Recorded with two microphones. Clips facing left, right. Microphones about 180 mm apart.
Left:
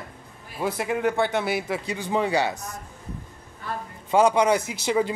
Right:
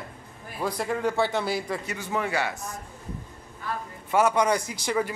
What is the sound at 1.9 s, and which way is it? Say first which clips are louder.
Speech: left 6 dB; 20° left (ahead or behind).